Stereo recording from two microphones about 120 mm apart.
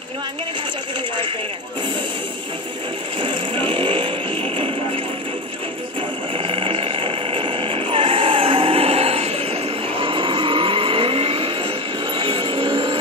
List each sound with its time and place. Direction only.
3.2 s vehicle: 45° right (ahead or behind)
4.6 s music: 45° right (ahead or behind)
6.3 s a sound: 50° right (ahead or behind)